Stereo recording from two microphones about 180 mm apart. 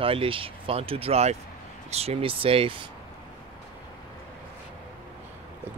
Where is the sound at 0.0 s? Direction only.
30° right (ahead or behind).